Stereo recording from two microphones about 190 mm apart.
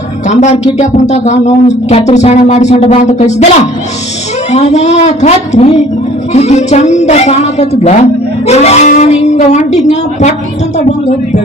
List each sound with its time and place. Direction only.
0.3 s speech: 35° left (ahead or behind)
4.5 s speech: 35° left (ahead or behind)